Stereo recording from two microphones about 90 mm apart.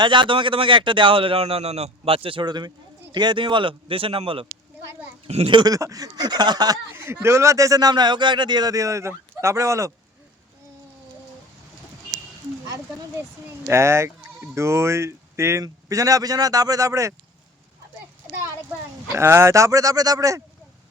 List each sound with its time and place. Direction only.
0.0 s speech: 65° right (ahead or behind); by 4.4 s 80° right
5.2 s speech: 65° right (ahead or behind)
5.6 s speech: 40° right (ahead or behind)
6.8 s a man's voice: 30° right (ahead or behind)
13.7 s a man's voice: 30° right (ahead or behind)
19.1 s a man's voice: 30° right (ahead or behind)